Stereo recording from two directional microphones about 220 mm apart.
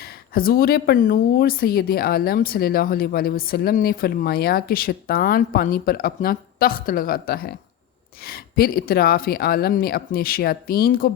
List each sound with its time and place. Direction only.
0.0 s speech: 40° left (ahead or behind)